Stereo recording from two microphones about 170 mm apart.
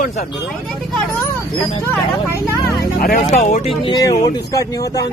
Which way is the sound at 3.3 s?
45° left (ahead or behind).